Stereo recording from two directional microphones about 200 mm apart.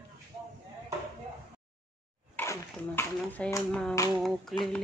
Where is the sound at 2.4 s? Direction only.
10° left (ahead or behind).